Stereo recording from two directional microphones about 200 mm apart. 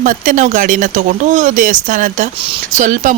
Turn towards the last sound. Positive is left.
turn(degrees=-40)  # may be behind; listen again after turning